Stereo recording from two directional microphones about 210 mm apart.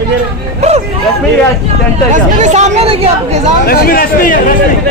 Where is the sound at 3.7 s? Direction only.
45° left (ahead or behind).